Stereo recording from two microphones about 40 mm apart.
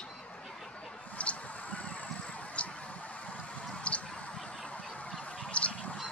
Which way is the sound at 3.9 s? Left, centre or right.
Left.